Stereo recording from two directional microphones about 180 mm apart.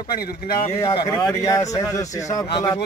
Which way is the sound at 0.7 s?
20° left (ahead or behind).